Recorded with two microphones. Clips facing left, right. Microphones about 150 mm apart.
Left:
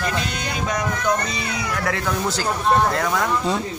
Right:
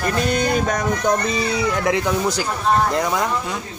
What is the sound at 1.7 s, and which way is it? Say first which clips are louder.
Speech: right 4 dB; 20° right (ahead or behind).